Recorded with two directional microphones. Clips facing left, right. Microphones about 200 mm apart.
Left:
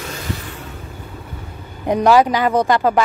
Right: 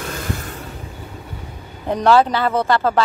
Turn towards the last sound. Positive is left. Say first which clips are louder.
# left 2 dB
turn(degrees=15)  # may be behind; listen again after turning